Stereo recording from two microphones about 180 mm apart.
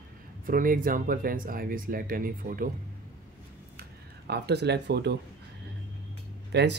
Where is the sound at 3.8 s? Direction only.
65° right (ahead or behind).